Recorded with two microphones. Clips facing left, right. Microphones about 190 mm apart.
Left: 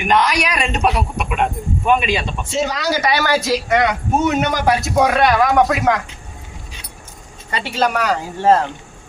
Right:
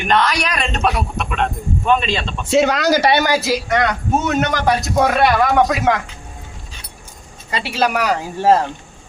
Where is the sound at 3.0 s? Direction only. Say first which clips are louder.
Right 3 dB; 25° right (ahead or behind).